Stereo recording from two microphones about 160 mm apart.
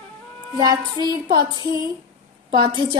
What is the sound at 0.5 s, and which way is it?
Music, 25° right (ahead or behind).